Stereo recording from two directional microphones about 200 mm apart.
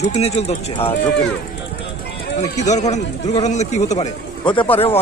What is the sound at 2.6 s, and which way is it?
Speech, 35° left (ahead or behind).